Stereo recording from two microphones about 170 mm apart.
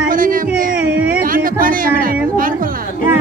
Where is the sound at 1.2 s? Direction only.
55° right (ahead or behind).